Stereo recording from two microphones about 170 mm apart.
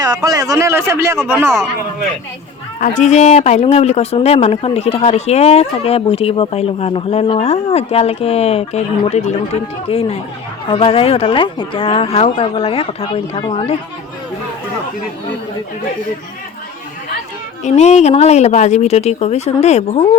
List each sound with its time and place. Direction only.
0.0 s speech: 20° right (ahead or behind)
2.8 s speech: 45° left (ahead or behind)
17.6 s speech: 40° left (ahead or behind)